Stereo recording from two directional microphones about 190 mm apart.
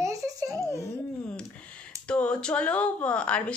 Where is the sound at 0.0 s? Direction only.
15° right (ahead or behind).